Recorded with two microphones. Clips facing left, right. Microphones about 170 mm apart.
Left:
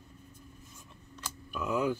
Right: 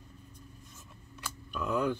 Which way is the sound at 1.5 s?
5° left (ahead or behind).